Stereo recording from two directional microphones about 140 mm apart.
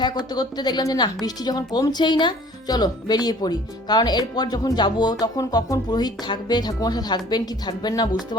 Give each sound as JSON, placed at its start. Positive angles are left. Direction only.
{"t": 0.0, "sound": "a woman's voice", "side_deg": 30}